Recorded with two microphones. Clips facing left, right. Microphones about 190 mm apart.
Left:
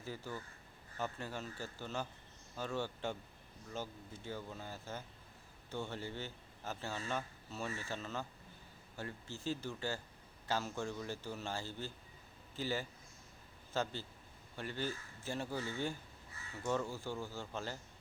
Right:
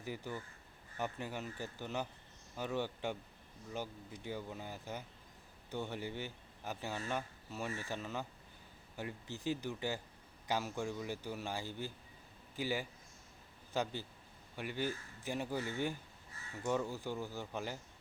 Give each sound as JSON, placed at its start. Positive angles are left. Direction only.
{"t": 0.0, "sound": "speech", "side_deg": -15}